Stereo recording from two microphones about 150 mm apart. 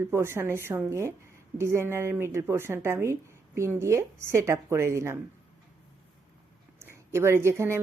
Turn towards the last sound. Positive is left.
turn(degrees=-15)  # may be behind; listen again after turning